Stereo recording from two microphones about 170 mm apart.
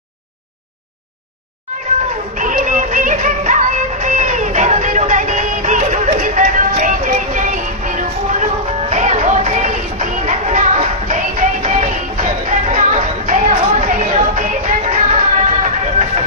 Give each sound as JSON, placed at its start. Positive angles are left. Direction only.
{"t": 2.3, "sound": "music", "side_deg": -50}